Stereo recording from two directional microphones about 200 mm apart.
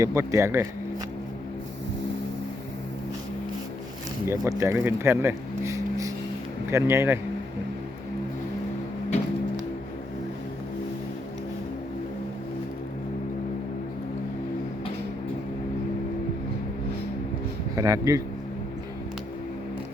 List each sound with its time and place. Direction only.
0.0 s speech: 15° right (ahead or behind)
4.3 s speech: 15° right (ahead or behind)
17.7 s a man's voice: 15° right (ahead or behind)